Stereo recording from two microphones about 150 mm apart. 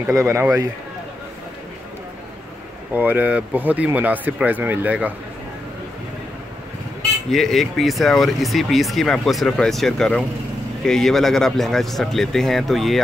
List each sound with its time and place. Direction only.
0.1 s a man's voice: 20° right (ahead or behind)
2.9 s speech: 10° right (ahead or behind)
7.2 s speech: centre (ahead or behind)